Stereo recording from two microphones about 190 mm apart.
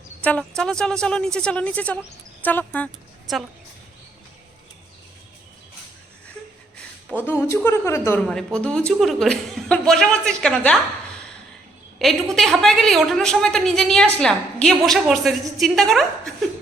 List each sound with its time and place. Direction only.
0.2 s a woman's voice: 5° left (ahead or behind)
7.1 s a woman's voice: 10° left (ahead or behind)
11.9 s a woman's voice: centre (ahead or behind)